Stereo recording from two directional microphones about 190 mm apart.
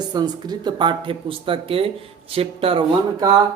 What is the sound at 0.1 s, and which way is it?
Speech, 20° right (ahead or behind).